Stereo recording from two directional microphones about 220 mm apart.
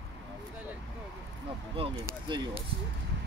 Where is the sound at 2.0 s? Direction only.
20° right (ahead or behind).